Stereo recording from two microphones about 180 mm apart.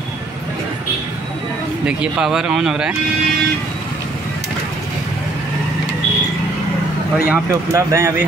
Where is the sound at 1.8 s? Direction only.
5° right (ahead or behind).